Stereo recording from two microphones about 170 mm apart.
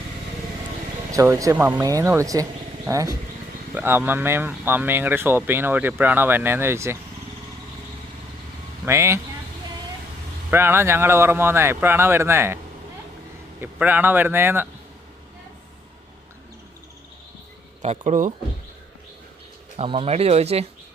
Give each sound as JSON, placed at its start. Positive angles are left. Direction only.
{"t": 1.1, "sound": "speech", "side_deg": -20}
{"t": 8.8, "sound": "speech", "side_deg": -15}
{"t": 10.5, "sound": "speech", "side_deg": -15}
{"t": 13.6, "sound": "speech", "side_deg": -10}
{"t": 17.8, "sound": "speech", "side_deg": -50}
{"t": 19.7, "sound": "speech", "side_deg": -35}